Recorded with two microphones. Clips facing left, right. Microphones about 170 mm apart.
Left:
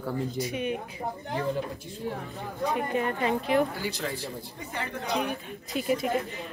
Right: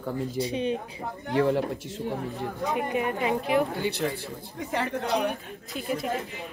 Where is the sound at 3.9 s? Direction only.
60° right (ahead or behind); by 4.9 s 80° right.